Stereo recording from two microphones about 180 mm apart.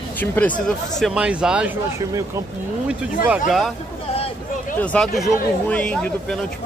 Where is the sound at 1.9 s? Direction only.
15° right (ahead or behind).